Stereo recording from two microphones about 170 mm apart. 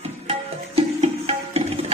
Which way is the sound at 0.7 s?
35° right (ahead or behind).